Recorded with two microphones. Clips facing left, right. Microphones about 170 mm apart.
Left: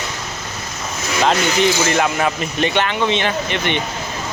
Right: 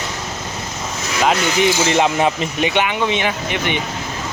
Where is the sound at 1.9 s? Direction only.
20° right (ahead or behind).